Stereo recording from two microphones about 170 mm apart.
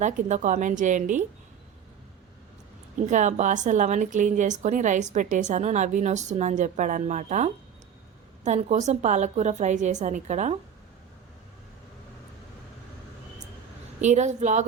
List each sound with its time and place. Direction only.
0.0 s a woman's voice: 45° right (ahead or behind)
3.0 s a woman's voice: 45° right (ahead or behind)
14.0 s a woman's voice: 45° right (ahead or behind)